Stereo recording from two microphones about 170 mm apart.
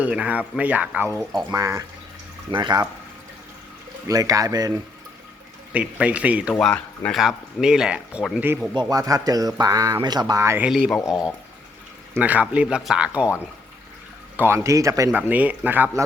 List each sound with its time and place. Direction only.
0.0 s speech: 5° right (ahead or behind)
1.3 s speech: centre (ahead or behind)
1.5 s speech: 20° right (ahead or behind)
4.1 s speech: 20° right (ahead or behind)
5.7 s speech: 5° right (ahead or behind)
8.7 s speech: 25° right (ahead or behind)
10.7 s speech: centre (ahead or behind)
12.1 s speech: 10° right (ahead or behind)
14.3 s speech: 15° right (ahead or behind)